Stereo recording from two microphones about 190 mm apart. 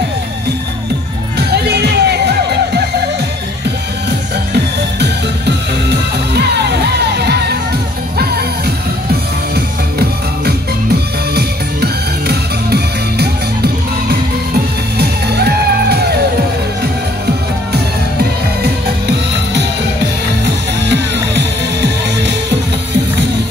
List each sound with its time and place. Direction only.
1.5 s music: 60° right (ahead or behind)
4.9 s music: 60° right (ahead or behind)
11.3 s music: 55° right (ahead or behind)
15.0 s music: 55° right (ahead or behind)
18.6 s music: 60° right (ahead or behind)
20.8 s music: 65° right (ahead or behind)